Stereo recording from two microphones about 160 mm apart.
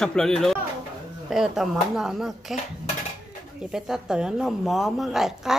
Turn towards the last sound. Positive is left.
turn(degrees=0)  # may be behind; listen again after turning